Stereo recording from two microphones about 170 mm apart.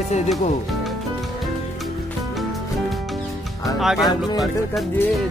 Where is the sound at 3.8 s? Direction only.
Centre (ahead or behind).